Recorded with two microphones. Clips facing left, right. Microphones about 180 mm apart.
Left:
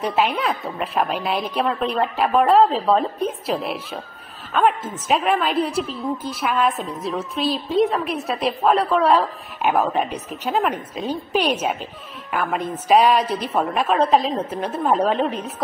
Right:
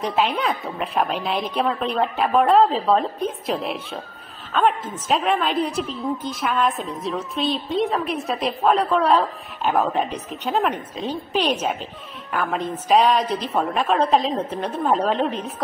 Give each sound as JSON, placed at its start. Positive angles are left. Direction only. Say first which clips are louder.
{"t": 0.0, "sound": "a woman's voice", "louder": "left 1 dB", "side_deg": 5}